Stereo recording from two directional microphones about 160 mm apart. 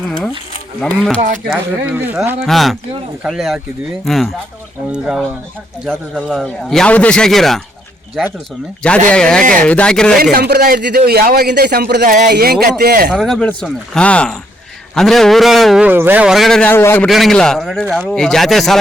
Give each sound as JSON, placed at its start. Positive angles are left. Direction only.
{"t": 0.8, "sound": "speech", "side_deg": 5}
{"t": 1.5, "sound": "speech", "side_deg": -10}
{"t": 2.5, "sound": "a man's voice", "side_deg": 0}
{"t": 9.0, "sound": "a man's voice", "side_deg": 5}
{"t": 10.3, "sound": "a man's voice", "side_deg": -70}
{"t": 12.3, "sound": "a man's voice", "side_deg": -70}
{"t": 13.1, "sound": "a man's voice", "side_deg": 5}
{"t": 17.1, "sound": "a man's voice", "side_deg": 0}